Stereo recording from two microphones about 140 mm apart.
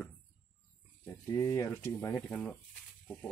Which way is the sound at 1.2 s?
20° left (ahead or behind).